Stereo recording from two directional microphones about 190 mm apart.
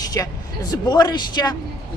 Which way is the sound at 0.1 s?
20° left (ahead or behind).